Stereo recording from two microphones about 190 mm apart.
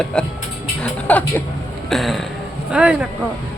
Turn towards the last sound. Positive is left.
turn(degrees=-5)  # may be behind; listen again after turning